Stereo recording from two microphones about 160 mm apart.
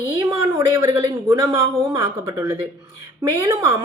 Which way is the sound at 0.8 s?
25° right (ahead or behind).